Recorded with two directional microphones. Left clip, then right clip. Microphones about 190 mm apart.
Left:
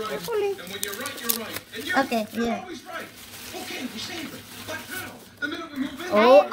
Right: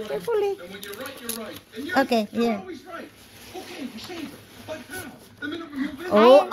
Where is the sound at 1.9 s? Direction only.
40° right (ahead or behind).